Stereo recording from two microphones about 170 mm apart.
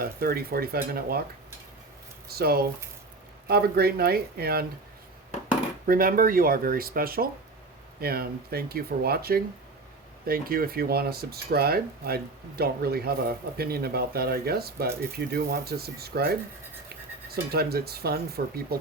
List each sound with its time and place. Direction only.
0.0 s speech: 60° right (ahead or behind)
2.2 s speech: 65° right (ahead or behind)
5.8 s speech: 55° right (ahead or behind)